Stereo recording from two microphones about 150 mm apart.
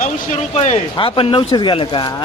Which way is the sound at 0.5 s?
50° left (ahead or behind).